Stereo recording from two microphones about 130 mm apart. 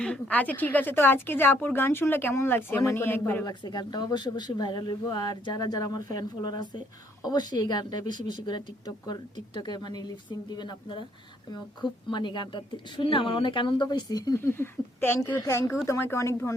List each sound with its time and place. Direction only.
0.0 s a woman's voice: 10° left (ahead or behind)
3.4 s speech: 35° left (ahead or behind)
14.3 s a woman's voice: 20° left (ahead or behind)